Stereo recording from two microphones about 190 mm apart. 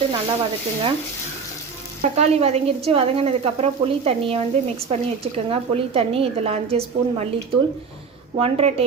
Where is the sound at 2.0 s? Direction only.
35° right (ahead or behind).